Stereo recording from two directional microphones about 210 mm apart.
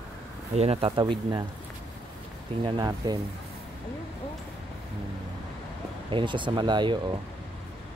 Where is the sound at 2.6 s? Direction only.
20° right (ahead or behind).